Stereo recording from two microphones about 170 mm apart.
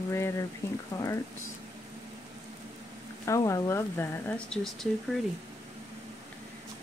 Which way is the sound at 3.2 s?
20° left (ahead or behind).